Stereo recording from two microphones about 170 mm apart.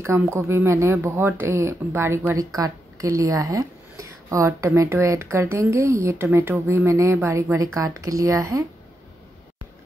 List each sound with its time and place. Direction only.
0.0 s speech: 15° right (ahead or behind)